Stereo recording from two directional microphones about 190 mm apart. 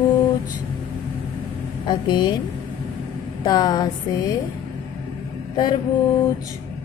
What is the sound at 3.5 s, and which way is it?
Music, 20° left (ahead or behind).